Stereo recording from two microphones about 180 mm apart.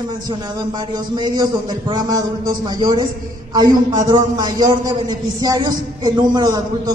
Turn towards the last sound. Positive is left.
turn(degrees=-20)  # may be behind; listen again after turning